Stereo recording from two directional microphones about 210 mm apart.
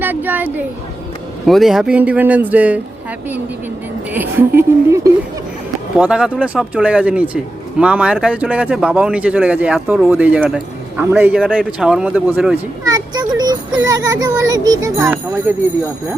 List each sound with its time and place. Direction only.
0.0 s speech: 10° right (ahead or behind)
4.1 s speech: 10° right (ahead or behind)
6.0 s speech: 5° right (ahead or behind)
12.8 s speech: 20° right (ahead or behind)